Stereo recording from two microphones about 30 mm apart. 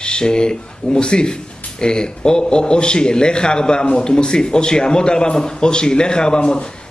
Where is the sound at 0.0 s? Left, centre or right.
Left.